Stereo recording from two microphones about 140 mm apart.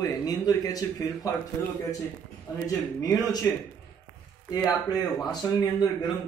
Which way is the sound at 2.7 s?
25° left (ahead or behind).